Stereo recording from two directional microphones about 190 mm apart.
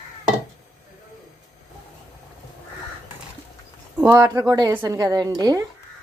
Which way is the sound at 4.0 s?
15° right (ahead or behind).